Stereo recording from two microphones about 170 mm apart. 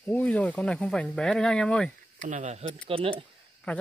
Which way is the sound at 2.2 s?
45° right (ahead or behind).